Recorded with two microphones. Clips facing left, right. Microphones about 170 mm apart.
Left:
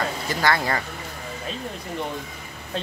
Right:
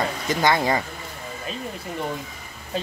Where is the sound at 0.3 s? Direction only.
20° right (ahead or behind).